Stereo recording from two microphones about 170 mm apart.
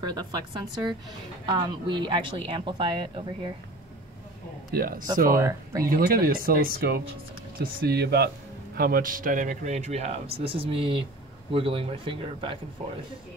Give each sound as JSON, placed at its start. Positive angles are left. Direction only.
{"t": 0.0, "sound": "speech", "side_deg": -25}
{"t": 4.7, "sound": "speech", "side_deg": -60}
{"t": 5.3, "sound": "speech", "side_deg": -20}
{"t": 5.9, "sound": "speech", "side_deg": -60}
{"t": 8.7, "sound": "speech", "side_deg": -60}